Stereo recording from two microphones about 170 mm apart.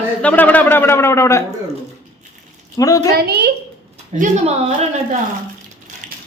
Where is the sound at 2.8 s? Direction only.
20° left (ahead or behind).